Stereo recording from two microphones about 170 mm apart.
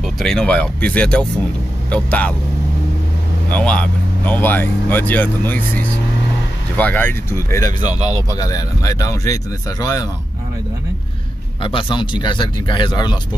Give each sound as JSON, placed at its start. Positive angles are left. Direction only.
{"t": 0.0, "sound": "speech", "side_deg": 0}
{"t": 3.4, "sound": "speech", "side_deg": 10}
{"t": 11.6, "sound": "speech", "side_deg": 30}